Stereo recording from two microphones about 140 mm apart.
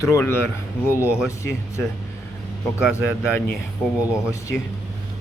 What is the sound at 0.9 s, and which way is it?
Speech, 10° right (ahead or behind).